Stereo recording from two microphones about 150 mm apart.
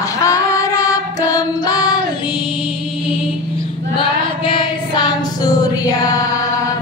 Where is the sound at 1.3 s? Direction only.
25° left (ahead or behind).